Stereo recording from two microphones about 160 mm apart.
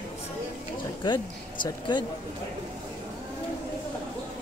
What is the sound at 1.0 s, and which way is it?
Speech, 25° left (ahead or behind).